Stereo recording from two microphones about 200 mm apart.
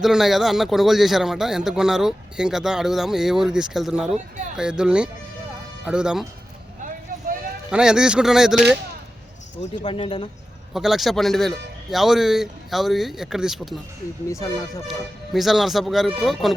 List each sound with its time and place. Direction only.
0.0 s speech: centre (ahead or behind)
7.7 s speech: 5° right (ahead or behind)
9.6 s speech: 30° left (ahead or behind)
10.8 s speech: centre (ahead or behind)
14.3 s speech: 15° left (ahead or behind)
14.8 s speech: centre (ahead or behind)